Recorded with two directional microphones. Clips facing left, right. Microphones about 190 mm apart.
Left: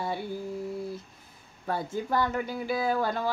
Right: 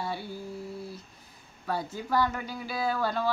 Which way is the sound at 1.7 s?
50° left (ahead or behind).